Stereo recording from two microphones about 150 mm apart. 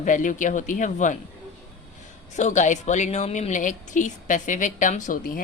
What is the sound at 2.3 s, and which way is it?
A woman's voice, 50° left (ahead or behind).